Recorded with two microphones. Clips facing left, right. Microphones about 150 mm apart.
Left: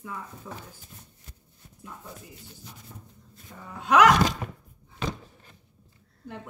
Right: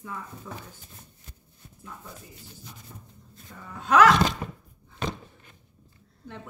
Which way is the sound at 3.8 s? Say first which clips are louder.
Even; 10° left (ahead or behind).